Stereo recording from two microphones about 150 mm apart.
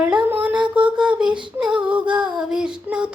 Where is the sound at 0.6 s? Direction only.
30° right (ahead or behind).